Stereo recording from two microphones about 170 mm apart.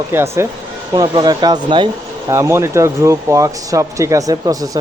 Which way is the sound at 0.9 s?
25° right (ahead or behind).